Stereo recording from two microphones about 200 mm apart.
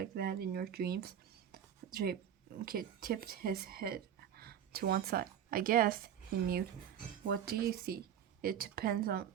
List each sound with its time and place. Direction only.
0.0 s speech: 50° right (ahead or behind)
1.5 s whispering: 50° right (ahead or behind)
2.6 s speech: 45° right (ahead or behind)
7.3 s a woman's voice: 50° right (ahead or behind)